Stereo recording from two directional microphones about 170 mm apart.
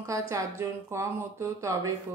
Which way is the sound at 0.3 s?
20° right (ahead or behind).